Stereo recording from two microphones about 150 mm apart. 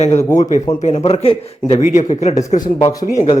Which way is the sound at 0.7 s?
45° left (ahead or behind).